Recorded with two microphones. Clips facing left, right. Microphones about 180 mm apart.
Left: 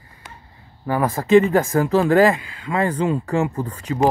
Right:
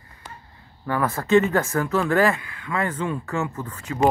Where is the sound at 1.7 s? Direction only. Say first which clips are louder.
Left 7 dB; 30° left (ahead or behind).